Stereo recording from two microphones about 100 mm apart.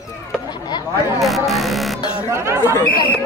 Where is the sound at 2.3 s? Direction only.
30° right (ahead or behind).